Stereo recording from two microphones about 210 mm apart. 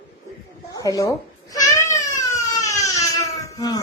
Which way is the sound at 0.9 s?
15° left (ahead or behind).